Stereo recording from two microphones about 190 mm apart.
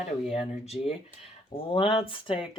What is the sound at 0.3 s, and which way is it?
Speech, 30° left (ahead or behind).